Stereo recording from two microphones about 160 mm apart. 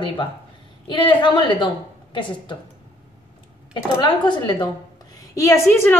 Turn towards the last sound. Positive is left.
turn(degrees=15)  # may be behind; listen again after turning